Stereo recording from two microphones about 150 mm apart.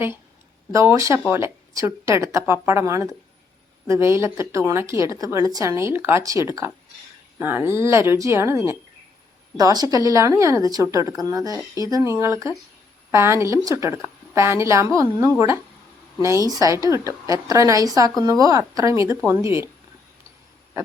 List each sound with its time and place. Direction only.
0.7 s a woman's voice: 20° right (ahead or behind)